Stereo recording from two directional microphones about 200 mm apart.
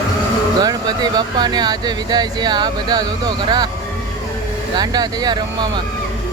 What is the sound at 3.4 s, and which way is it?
Speech, 20° right (ahead or behind).